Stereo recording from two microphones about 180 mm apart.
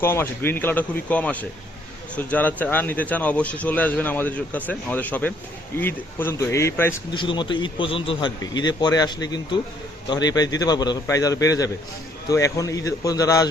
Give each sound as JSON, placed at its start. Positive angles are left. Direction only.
{"t": 0.0, "sound": "speech", "side_deg": 15}
{"t": 7.1, "sound": "a man's voice", "side_deg": 25}